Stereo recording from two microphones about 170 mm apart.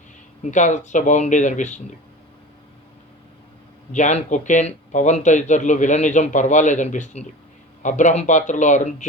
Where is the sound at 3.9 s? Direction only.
45° left (ahead or behind).